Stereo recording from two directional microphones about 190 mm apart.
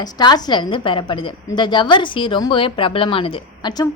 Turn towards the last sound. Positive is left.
turn(degrees=20)  # may be behind; listen again after turning